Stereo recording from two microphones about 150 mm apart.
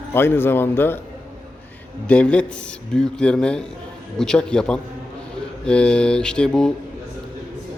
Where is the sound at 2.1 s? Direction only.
10° left (ahead or behind).